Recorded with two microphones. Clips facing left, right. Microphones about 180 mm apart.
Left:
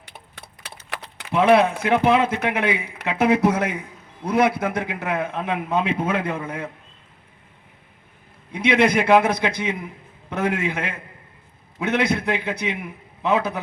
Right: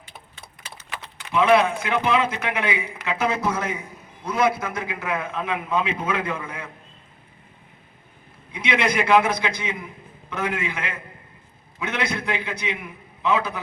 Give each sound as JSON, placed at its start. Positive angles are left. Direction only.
{"t": 0.0, "sound": "a sound", "side_deg": 65}
{"t": 1.3, "sound": "a man's voice", "side_deg": 55}
{"t": 8.5, "sound": "a man's voice", "side_deg": 55}